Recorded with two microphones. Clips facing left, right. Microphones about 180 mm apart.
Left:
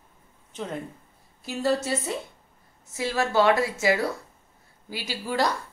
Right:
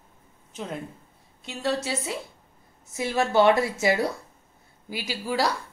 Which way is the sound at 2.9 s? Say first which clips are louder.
Right 2 dB; 20° right (ahead or behind).